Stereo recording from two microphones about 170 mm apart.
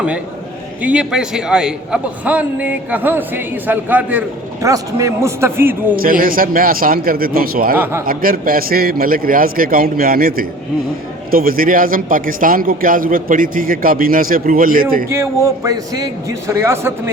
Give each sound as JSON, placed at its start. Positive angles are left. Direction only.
{"t": 0.8, "sound": "a man's voice", "side_deg": -5}
{"t": 6.0, "sound": "a man's voice", "side_deg": -55}
{"t": 15.1, "sound": "a man's voice", "side_deg": -15}